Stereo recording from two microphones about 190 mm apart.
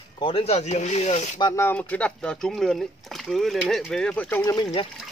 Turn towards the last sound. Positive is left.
turn(degrees=15)  # may be behind; listen again after turning